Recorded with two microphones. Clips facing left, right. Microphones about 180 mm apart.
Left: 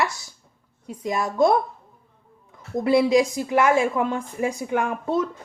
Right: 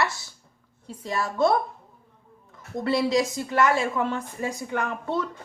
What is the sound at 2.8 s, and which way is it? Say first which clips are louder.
A woman's voice: left 5 dB; 15° left (ahead or behind).